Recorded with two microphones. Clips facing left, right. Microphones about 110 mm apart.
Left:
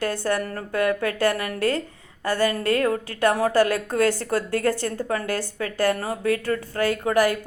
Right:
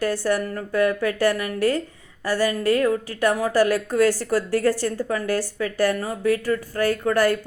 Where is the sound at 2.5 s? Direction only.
40° left (ahead or behind).